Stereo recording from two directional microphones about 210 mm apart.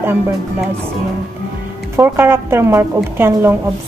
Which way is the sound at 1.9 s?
10° right (ahead or behind).